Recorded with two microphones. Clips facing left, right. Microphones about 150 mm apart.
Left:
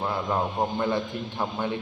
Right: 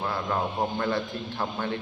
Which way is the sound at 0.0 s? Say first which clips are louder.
Left 2 dB; 20° left (ahead or behind).